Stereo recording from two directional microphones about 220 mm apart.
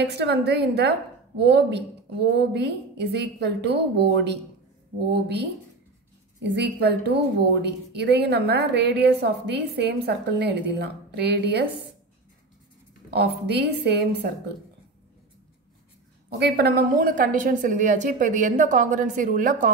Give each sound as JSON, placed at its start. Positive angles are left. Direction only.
{"t": 0.0, "sound": "a woman's voice", "side_deg": -50}
{"t": 13.1, "sound": "a woman's voice", "side_deg": -50}
{"t": 16.3, "sound": "a woman's voice", "side_deg": -50}